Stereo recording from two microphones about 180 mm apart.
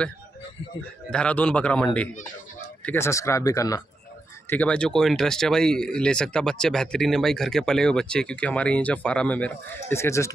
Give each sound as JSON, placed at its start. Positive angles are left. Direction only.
{"t": 1.1, "sound": "speech", "side_deg": 5}
{"t": 4.5, "sound": "speech", "side_deg": 5}